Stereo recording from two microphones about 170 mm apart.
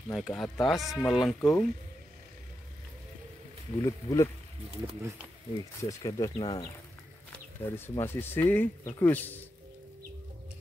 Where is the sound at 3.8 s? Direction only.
20° left (ahead or behind).